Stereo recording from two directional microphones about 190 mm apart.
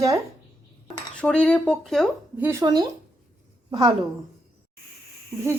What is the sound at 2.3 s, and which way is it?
Speech, 10° right (ahead or behind).